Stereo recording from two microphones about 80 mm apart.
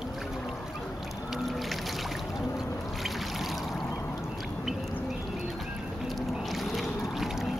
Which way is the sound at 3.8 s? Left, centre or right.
Left.